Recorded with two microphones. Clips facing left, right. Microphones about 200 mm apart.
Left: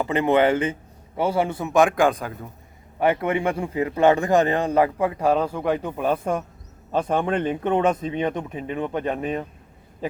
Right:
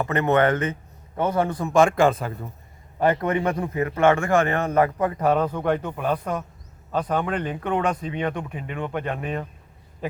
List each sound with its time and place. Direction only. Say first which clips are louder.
0.1 s a man's voice: left 2 dB; 10° left (ahead or behind)
6.9 s speech: left 2 dB; 25° left (ahead or behind)